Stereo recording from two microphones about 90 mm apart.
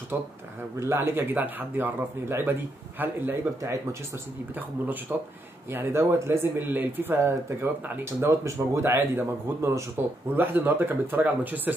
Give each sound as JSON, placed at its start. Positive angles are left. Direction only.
{"t": 0.1, "sound": "speech", "side_deg": -20}